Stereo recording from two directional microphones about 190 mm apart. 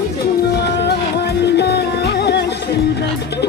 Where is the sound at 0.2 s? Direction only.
55° left (ahead or behind).